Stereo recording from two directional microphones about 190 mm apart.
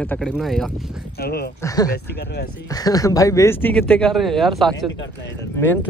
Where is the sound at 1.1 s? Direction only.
55° left (ahead or behind).